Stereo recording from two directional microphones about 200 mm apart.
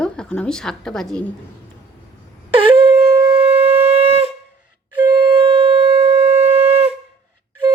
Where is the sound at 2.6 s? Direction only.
30° right (ahead or behind).